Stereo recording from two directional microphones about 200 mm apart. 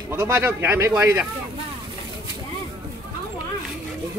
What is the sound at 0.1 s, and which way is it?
Speech, 10° right (ahead or behind).